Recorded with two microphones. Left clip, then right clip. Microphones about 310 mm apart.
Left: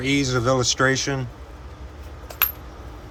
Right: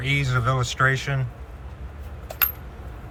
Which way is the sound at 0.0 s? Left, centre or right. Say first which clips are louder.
Left 3 dB; centre.